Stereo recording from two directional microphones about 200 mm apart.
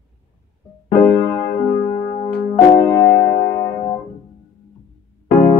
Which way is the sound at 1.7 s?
40° left (ahead or behind).